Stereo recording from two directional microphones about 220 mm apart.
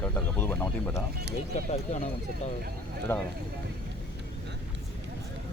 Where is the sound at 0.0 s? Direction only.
10° left (ahead or behind).